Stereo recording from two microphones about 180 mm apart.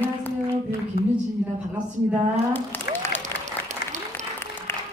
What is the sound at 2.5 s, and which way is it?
Applause, 10° left (ahead or behind).